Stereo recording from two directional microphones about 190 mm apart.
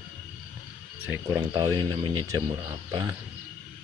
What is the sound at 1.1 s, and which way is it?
Speech, 20° right (ahead or behind).